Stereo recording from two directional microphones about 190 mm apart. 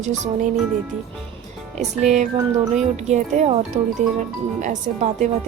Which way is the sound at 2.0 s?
40° right (ahead or behind).